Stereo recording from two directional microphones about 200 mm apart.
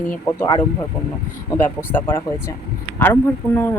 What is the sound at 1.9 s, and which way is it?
Speech, 10° left (ahead or behind).